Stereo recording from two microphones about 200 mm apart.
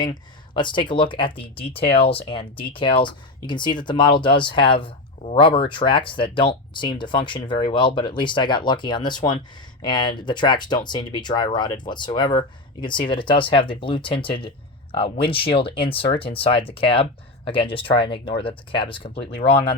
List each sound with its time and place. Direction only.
0.0 s speech: 20° left (ahead or behind)